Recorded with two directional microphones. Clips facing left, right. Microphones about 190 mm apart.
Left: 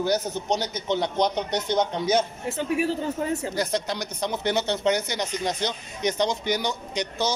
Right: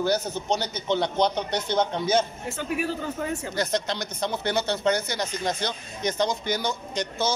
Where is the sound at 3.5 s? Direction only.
10° left (ahead or behind).